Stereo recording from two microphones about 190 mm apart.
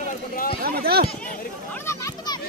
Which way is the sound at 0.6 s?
50° right (ahead or behind).